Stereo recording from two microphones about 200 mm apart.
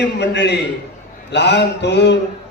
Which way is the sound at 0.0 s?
60° left (ahead or behind).